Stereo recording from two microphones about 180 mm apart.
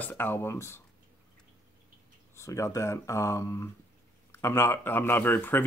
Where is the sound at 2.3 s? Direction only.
15° left (ahead or behind).